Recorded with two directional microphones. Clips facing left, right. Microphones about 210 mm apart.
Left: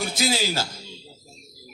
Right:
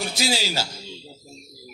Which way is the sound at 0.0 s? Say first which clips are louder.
Left 1 dB; 50° left (ahead or behind).